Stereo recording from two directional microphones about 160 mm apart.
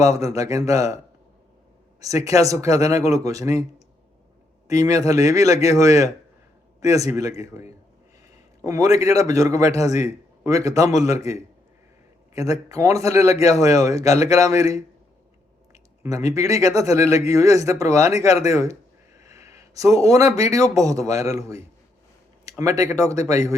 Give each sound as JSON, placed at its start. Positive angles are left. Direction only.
{"t": 0.0, "sound": "a man's voice", "side_deg": -20}
{"t": 2.0, "sound": "a man's voice", "side_deg": -20}
{"t": 4.7, "sound": "a man's voice", "side_deg": -20}
{"t": 16.0, "sound": "a man's voice", "side_deg": -20}